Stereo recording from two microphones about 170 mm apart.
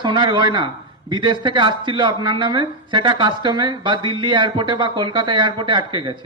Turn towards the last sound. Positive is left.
turn(degrees=-25)  # may be behind; listen again after turning